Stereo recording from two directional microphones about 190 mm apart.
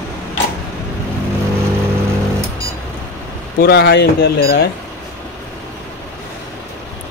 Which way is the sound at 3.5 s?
55° left (ahead or behind).